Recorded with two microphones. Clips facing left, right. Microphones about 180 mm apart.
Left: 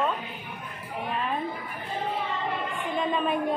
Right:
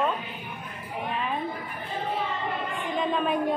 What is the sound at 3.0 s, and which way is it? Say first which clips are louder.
Speech: right 1 dB; centre (ahead or behind).